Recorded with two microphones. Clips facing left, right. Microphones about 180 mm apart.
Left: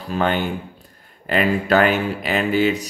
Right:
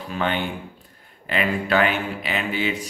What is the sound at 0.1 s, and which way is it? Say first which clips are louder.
Speech: left 5 dB; 40° left (ahead or behind).